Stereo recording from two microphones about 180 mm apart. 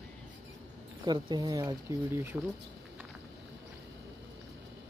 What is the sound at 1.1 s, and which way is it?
Speech, 25° right (ahead or behind).